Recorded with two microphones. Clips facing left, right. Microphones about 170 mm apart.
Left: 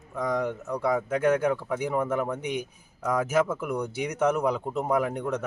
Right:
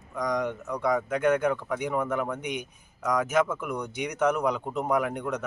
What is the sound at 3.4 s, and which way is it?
Speech, 10° left (ahead or behind).